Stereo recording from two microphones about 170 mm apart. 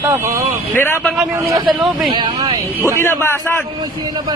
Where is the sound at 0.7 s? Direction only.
10° left (ahead or behind).